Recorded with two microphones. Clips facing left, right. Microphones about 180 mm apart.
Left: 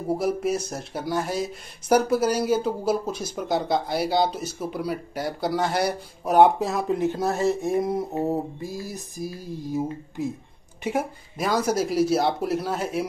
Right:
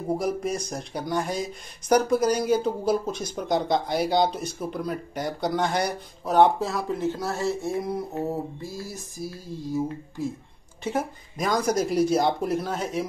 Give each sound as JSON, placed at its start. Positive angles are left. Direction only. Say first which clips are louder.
{"t": 0.1, "sound": "speech", "louder": "left 2 dB", "side_deg": 5}
{"t": 8.2, "sound": "a sound", "louder": "left 3 dB", "side_deg": 15}
{"t": 10.8, "sound": "speech", "louder": "left 1 dB", "side_deg": 10}